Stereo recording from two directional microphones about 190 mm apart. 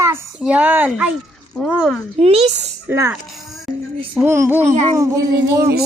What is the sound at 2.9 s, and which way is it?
Speech, 10° right (ahead or behind).